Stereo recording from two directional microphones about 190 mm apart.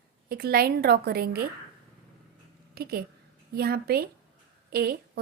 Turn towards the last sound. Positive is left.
turn(degrees=-55)  # may be behind; listen again after turning